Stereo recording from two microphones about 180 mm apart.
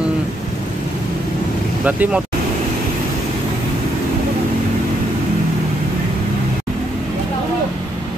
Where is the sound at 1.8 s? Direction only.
10° right (ahead or behind).